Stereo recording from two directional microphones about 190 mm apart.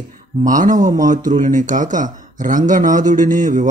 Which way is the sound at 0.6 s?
40° right (ahead or behind).